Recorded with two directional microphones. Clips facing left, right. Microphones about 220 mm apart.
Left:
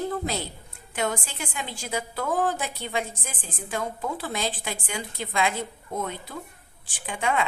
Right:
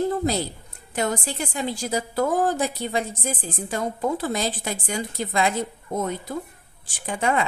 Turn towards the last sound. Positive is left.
turn(degrees=-40)  # may be behind; listen again after turning